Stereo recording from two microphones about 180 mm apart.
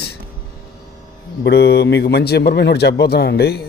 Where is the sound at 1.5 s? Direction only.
65° left (ahead or behind).